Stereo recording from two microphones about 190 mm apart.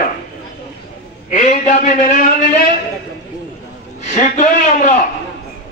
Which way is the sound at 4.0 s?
40° left (ahead or behind).